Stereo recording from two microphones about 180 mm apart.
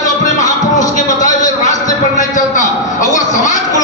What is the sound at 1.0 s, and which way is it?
A man's voice, 45° left (ahead or behind).